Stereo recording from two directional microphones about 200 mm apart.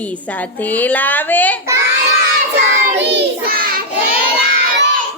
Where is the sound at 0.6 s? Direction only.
10° left (ahead or behind).